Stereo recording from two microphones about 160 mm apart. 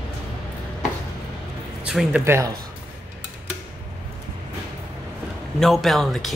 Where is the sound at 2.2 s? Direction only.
20° right (ahead or behind).